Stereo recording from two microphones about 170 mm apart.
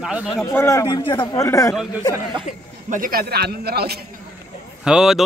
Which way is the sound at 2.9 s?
60° right (ahead or behind).